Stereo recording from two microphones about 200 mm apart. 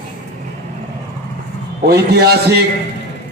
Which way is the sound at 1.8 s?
55° right (ahead or behind).